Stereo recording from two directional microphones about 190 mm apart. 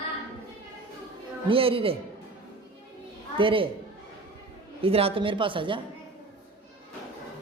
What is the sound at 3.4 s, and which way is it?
Speech, 25° right (ahead or behind).